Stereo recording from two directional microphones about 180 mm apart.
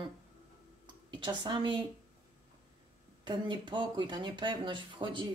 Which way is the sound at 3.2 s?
25° right (ahead or behind).